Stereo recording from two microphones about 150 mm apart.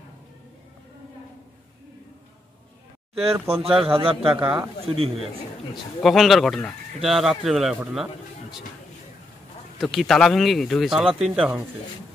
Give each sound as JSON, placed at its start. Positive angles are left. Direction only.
{"t": 3.3, "sound": "speech", "side_deg": -15}
{"t": 3.8, "sound": "a man's voice", "side_deg": -40}
{"t": 4.3, "sound": "speech", "side_deg": -5}
{"t": 4.8, "sound": "a man's voice", "side_deg": -40}
{"t": 5.9, "sound": "speech", "side_deg": 0}
{"t": 9.8, "sound": "speech", "side_deg": 0}